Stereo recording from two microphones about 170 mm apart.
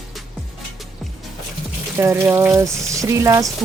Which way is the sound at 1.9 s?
15° right (ahead or behind).